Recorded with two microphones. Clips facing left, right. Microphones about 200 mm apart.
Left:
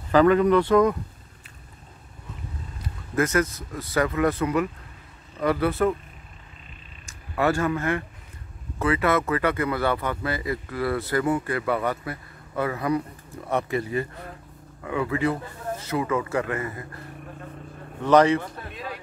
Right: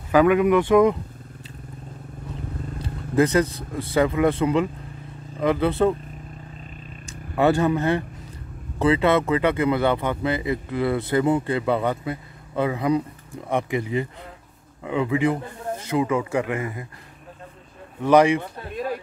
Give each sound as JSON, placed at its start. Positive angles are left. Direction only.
{"t": 0.1, "sound": "speech", "side_deg": -10}
{"t": 2.8, "sound": "speech", "side_deg": -30}
{"t": 7.3, "sound": "speech", "side_deg": -20}
{"t": 18.0, "sound": "speech", "side_deg": -10}